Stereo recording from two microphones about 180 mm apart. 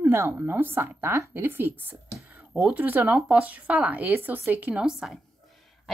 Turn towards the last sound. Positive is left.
turn(degrees=0)  # may be behind; listen again after turning